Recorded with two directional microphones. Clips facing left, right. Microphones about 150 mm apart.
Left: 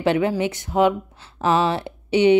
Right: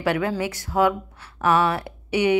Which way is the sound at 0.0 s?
25° left (ahead or behind).